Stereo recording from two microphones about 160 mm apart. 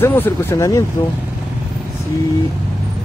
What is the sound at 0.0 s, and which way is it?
Speech, 15° left (ahead or behind).